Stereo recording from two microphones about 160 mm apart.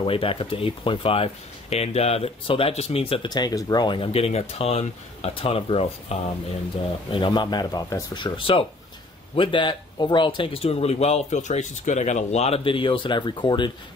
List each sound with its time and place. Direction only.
0.0 s speech: 35° left (ahead or behind)